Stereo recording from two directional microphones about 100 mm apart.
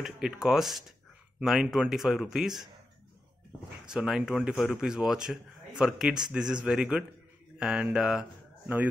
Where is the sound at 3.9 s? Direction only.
5° right (ahead or behind).